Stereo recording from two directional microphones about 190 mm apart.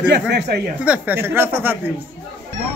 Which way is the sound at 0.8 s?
10° right (ahead or behind).